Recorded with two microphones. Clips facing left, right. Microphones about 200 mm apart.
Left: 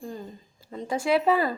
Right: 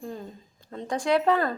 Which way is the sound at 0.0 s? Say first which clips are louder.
Even; centre (ahead or behind).